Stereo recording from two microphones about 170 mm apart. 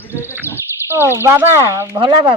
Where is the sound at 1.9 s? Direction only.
30° right (ahead or behind).